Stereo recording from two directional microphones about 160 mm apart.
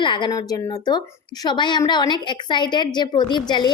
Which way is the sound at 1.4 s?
30° left (ahead or behind).